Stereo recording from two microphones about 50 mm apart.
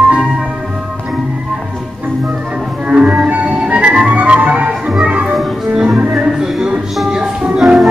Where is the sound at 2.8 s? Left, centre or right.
Right.